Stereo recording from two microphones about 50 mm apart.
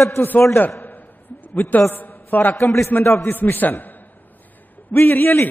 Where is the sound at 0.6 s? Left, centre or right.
Left.